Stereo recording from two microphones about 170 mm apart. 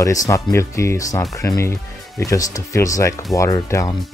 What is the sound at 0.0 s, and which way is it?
Speech, 20° left (ahead or behind).